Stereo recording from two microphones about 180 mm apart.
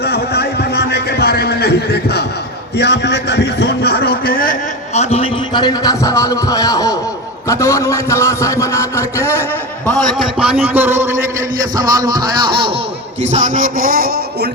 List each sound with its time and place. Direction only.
0.0 s a sound: 65° left (ahead or behind)
2.7 s a man's voice: 70° left (ahead or behind); by 4.5 s 55° left (ahead or behind)
4.9 s a man's voice: 35° left (ahead or behind); by 9.4 s 15° left (ahead or behind)
9.8 s a man's voice: 5° left (ahead or behind); by 11.1 s 10° right (ahead or behind)
11.8 s music: 20° right (ahead or behind)
13.3 s music: 45° right (ahead or behind)